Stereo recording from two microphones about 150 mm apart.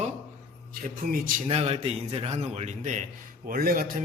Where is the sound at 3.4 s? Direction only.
70° right (ahead or behind).